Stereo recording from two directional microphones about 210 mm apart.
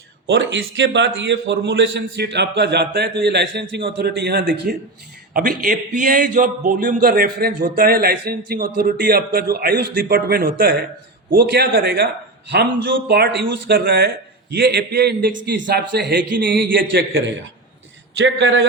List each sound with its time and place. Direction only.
0.3 s a man's voice: 60° right (ahead or behind)
18.2 s a man's voice: 55° right (ahead or behind)